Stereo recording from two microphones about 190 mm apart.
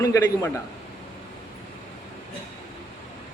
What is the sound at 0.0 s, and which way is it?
Speech, 15° left (ahead or behind).